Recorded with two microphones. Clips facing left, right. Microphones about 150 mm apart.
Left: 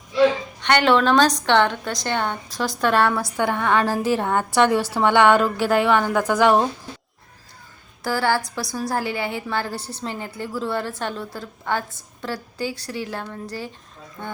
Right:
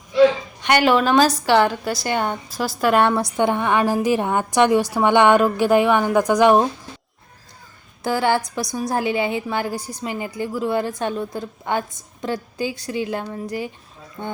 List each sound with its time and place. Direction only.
0.6 s a woman's voice: 10° right (ahead or behind)
3.0 s a woman's voice: 20° right (ahead or behind)
8.0 s a woman's voice: 20° right (ahead or behind)